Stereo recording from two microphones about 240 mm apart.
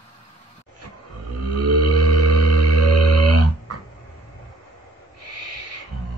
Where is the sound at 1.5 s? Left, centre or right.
Right.